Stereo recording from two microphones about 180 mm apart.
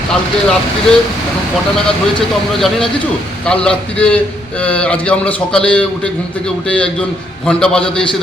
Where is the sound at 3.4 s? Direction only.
5° left (ahead or behind).